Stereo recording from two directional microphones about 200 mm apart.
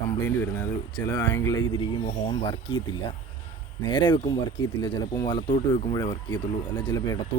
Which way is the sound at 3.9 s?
25° left (ahead or behind).